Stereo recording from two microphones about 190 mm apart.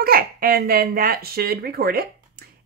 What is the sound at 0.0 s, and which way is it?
Speech, 50° right (ahead or behind).